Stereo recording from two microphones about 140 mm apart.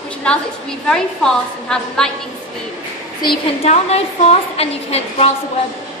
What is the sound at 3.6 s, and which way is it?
A woman's voice, 50° left (ahead or behind).